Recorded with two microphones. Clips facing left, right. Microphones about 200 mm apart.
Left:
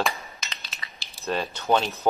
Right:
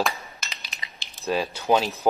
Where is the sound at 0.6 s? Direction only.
15° right (ahead or behind).